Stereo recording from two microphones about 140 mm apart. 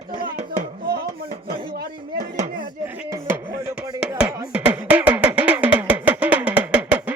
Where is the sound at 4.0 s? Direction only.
5° right (ahead or behind).